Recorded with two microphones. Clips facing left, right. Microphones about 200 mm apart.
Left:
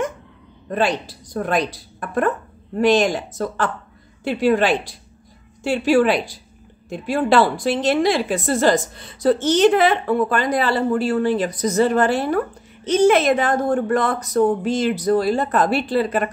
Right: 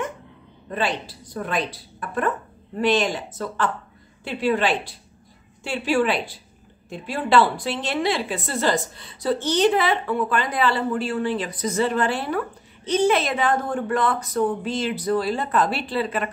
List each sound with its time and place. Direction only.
0.7 s a woman's voice: 45° left (ahead or behind)